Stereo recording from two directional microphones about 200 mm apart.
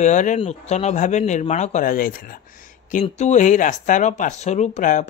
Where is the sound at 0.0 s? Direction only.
40° left (ahead or behind).